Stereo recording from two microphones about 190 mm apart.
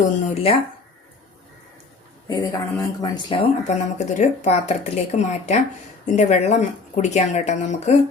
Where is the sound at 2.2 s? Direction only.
20° left (ahead or behind).